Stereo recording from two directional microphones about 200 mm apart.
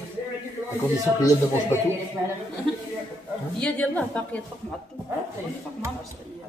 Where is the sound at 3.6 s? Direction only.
5° left (ahead or behind).